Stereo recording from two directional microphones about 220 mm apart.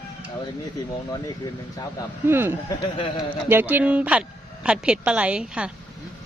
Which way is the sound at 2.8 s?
20° left (ahead or behind).